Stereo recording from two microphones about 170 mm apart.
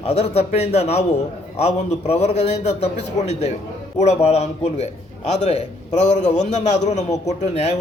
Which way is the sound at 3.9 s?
40° left (ahead or behind).